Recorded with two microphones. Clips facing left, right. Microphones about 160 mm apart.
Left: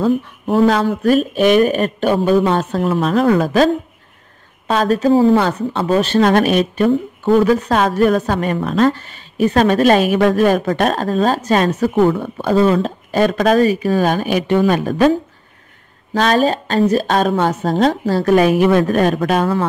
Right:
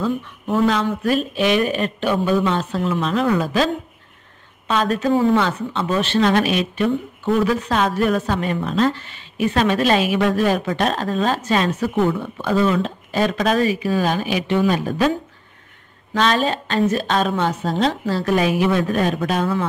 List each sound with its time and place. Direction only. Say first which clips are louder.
0.0 s speech: left 6 dB; 35° left (ahead or behind); by 15.0 s 55° left (ahead or behind)
16.1 s speech: left 4 dB; 40° left (ahead or behind); by 19.4 s 60° left (ahead or behind)